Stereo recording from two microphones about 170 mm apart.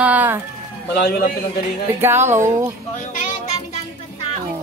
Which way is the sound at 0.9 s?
70° left (ahead or behind).